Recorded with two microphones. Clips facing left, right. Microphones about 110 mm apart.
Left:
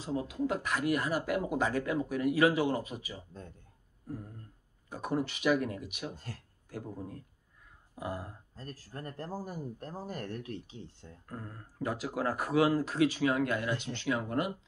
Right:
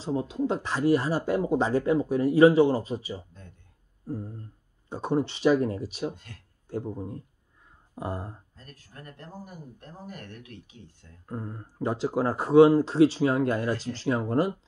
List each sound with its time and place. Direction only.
0.0 s speech: 30° right (ahead or behind)
4.8 s speech: 25° right (ahead or behind)
6.1 s speech: 35° left (ahead or behind)
6.7 s speech: 25° right (ahead or behind)
8.5 s speech: 35° left (ahead or behind)
11.2 s speech: 25° right (ahead or behind)